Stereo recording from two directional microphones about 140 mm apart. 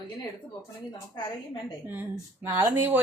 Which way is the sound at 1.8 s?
15° right (ahead or behind).